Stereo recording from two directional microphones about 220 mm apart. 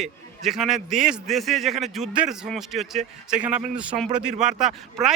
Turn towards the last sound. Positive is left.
turn(degrees=0)  # may be behind; listen again after turning